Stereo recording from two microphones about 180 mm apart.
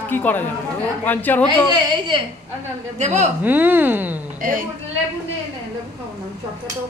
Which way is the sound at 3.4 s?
10° right (ahead or behind).